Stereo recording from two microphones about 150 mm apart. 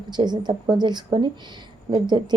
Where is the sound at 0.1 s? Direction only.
30° right (ahead or behind).